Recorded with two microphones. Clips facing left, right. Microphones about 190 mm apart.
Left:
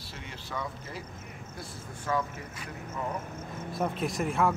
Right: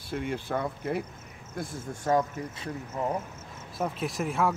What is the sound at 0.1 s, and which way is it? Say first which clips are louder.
Speech: right 10 dB; 55° right (ahead or behind).